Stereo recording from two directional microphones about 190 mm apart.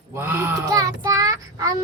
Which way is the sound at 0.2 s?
10° right (ahead or behind).